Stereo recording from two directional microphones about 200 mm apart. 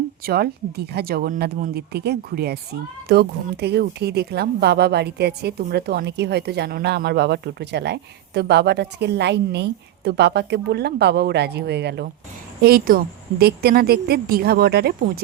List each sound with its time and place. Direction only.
0.3 s a woman's voice: 50° right (ahead or behind)